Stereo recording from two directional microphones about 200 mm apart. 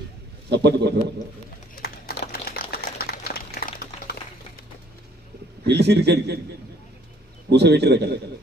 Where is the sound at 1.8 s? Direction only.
50° left (ahead or behind).